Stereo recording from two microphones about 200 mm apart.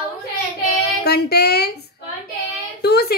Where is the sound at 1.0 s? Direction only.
50° left (ahead or behind).